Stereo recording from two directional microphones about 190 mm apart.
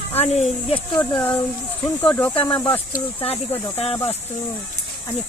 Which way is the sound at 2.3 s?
25° left (ahead or behind).